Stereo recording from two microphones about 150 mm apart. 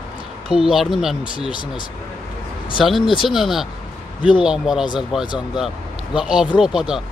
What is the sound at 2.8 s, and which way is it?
Speech, centre (ahead or behind).